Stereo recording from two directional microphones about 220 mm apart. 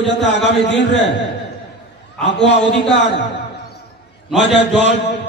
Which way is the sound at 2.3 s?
55° left (ahead or behind).